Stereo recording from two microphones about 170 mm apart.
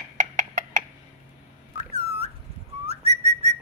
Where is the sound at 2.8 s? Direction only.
40° right (ahead or behind).